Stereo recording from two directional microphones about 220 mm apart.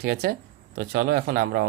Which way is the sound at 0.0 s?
45° right (ahead or behind).